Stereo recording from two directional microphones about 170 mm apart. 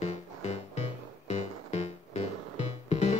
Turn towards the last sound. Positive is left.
turn(degrees=40)  # may be behind; listen again after turning